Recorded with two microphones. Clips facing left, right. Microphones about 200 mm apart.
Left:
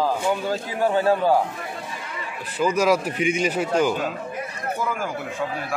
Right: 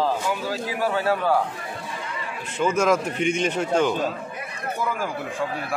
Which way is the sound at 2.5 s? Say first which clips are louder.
Left 1 dB; 5° left (ahead or behind).